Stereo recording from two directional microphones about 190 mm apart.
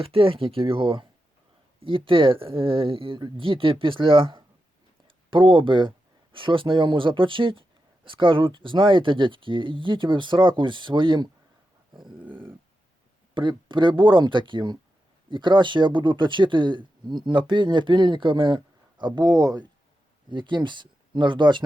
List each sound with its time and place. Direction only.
0.0 s speech: 30° right (ahead or behind)
11.9 s dog: centre (ahead or behind)
13.3 s speech: 25° right (ahead or behind)